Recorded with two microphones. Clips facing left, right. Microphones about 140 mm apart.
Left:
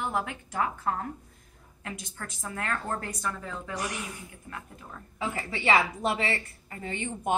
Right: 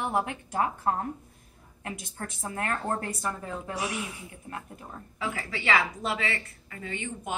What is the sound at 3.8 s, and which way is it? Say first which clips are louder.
Speech: right 2 dB; centre (ahead or behind).